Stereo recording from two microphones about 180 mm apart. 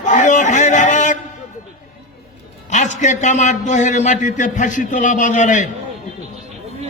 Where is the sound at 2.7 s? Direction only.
40° left (ahead or behind).